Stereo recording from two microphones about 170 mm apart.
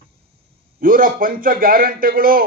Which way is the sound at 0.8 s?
55° right (ahead or behind).